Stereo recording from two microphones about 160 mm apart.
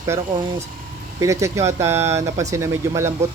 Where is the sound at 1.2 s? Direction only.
20° right (ahead or behind).